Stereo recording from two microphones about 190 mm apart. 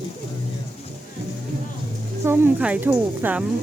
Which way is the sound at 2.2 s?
10° right (ahead or behind).